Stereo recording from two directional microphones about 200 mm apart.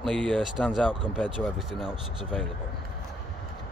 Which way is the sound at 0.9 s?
25° right (ahead or behind).